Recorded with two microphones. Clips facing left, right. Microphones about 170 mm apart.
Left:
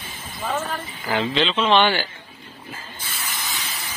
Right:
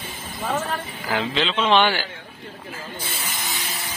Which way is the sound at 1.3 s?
Centre (ahead or behind).